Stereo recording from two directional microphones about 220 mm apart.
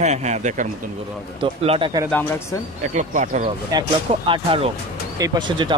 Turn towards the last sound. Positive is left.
turn(degrees=-20)  # may be behind; listen again after turning